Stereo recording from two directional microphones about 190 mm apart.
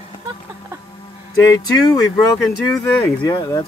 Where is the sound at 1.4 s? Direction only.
20° left (ahead or behind).